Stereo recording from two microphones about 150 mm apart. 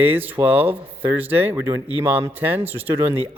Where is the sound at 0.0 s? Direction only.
15° right (ahead or behind).